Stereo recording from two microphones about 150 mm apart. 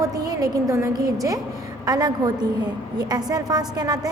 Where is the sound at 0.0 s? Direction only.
25° right (ahead or behind).